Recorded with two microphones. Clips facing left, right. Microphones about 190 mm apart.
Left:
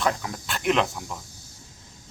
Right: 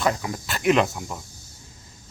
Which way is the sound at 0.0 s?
5° right (ahead or behind).